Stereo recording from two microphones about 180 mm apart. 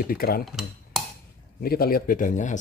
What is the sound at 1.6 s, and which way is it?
Speech, 55° left (ahead or behind).